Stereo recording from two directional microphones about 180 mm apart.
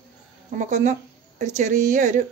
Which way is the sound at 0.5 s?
45° right (ahead or behind).